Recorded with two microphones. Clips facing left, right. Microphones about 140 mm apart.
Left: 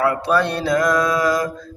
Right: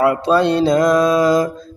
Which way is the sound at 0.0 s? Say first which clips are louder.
Right 4 dB; 25° right (ahead or behind).